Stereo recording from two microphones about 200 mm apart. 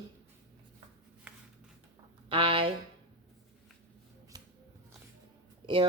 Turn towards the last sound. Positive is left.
turn(degrees=-25)  # may be behind; listen again after turning